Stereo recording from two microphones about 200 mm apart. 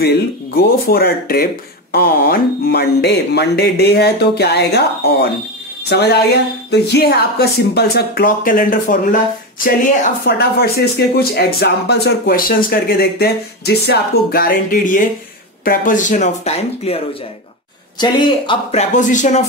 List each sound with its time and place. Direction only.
0.6 s speech: 50° left (ahead or behind)
10.2 s speech: 55° left (ahead or behind); by 19.4 s 40° left (ahead or behind)